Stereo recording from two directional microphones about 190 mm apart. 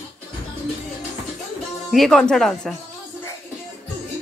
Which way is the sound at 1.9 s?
Centre (ahead or behind).